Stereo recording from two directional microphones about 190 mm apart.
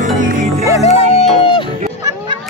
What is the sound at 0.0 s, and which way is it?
Music, 45° right (ahead or behind).